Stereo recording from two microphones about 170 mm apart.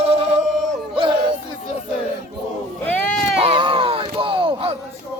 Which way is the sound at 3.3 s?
35° right (ahead or behind).